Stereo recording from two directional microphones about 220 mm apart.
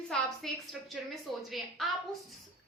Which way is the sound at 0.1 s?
Centre (ahead or behind).